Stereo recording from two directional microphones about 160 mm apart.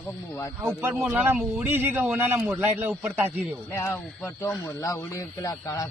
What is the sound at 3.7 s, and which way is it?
A man's voice, 20° left (ahead or behind).